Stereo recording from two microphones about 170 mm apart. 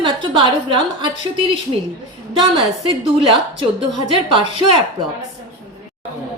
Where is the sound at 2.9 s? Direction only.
30° right (ahead or behind).